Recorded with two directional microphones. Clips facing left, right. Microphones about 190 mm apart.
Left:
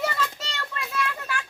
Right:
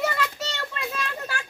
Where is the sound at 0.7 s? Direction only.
30° right (ahead or behind).